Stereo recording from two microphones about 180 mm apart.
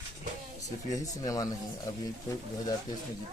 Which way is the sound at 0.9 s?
20° left (ahead or behind).